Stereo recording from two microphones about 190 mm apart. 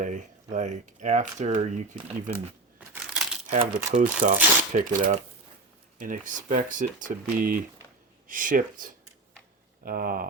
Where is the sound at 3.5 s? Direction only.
40° right (ahead or behind).